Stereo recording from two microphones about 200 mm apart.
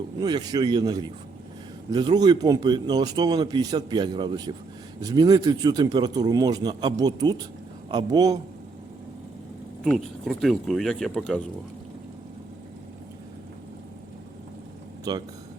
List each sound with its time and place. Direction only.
0.2 s speech: 20° right (ahead or behind)
9.8 s speech: centre (ahead or behind)
15.1 s speech: 20° right (ahead or behind)